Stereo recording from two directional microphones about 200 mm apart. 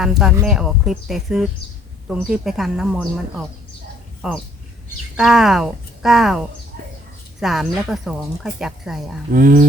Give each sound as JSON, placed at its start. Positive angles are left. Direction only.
{"t": 0.0, "sound": "a woman's voice", "side_deg": 0}
{"t": 9.3, "sound": "speech", "side_deg": -45}